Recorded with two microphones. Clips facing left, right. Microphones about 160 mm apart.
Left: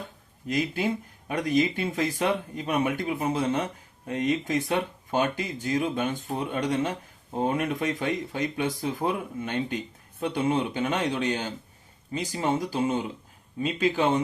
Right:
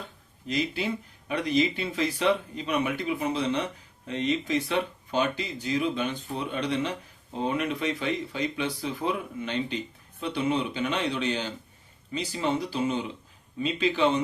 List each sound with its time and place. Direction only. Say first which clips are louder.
0.4 s speech: left 2 dB; 50° left (ahead or behind)